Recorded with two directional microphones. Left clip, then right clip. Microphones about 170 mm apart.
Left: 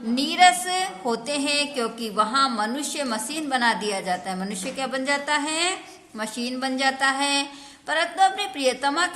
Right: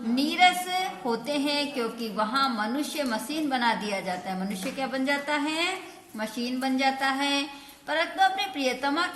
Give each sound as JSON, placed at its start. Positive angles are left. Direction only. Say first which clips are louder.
{"t": 0.2, "sound": "a woman's voice", "louder": "left 4 dB", "side_deg": 25}